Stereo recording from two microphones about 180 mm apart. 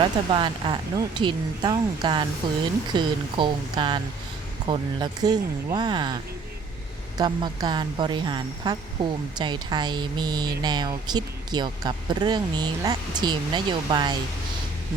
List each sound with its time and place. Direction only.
0.0 s speech: 25° right (ahead or behind)
7.2 s speech: 25° right (ahead or behind)